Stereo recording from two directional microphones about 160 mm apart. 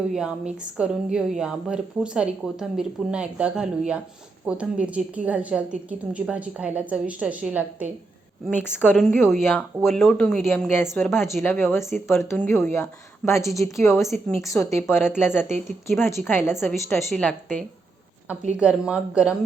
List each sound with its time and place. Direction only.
0.1 s a woman's voice: 5° right (ahead or behind)
8.6 s a woman's voice: 10° left (ahead or behind)
9.0 s a woman's voice: centre (ahead or behind)
11.4 s a woman's voice: 15° left (ahead or behind)
13.4 s a woman's voice: centre (ahead or behind)
14.7 s a woman's voice: 15° left (ahead or behind)
18.5 s a woman's voice: 5° right (ahead or behind)